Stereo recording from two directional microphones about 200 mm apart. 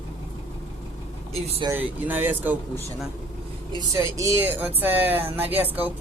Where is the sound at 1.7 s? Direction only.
10° right (ahead or behind).